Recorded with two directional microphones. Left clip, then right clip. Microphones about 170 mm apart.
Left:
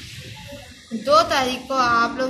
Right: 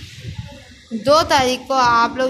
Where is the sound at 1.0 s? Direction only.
50° right (ahead or behind).